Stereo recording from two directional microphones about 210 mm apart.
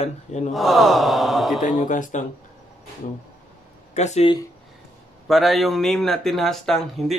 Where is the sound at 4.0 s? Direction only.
30° left (ahead or behind).